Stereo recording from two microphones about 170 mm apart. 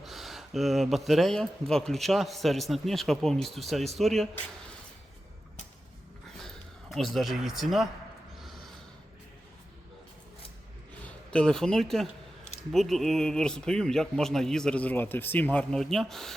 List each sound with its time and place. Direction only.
0.0 s a man's voice: centre (ahead or behind)
6.9 s a man's voice: centre (ahead or behind)
11.3 s a man's voice: 5° left (ahead or behind)